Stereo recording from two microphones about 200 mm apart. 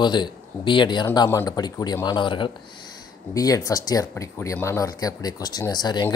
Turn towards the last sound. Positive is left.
turn(degrees=20)  # may be behind; listen again after turning